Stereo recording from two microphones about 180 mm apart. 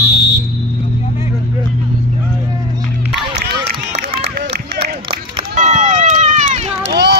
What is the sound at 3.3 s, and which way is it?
Run, 65° right (ahead or behind).